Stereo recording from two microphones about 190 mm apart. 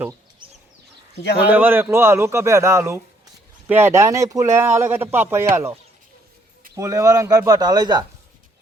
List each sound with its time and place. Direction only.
1.5 s a man's voice: 10° right (ahead or behind)
6.7 s speech: 15° right (ahead or behind)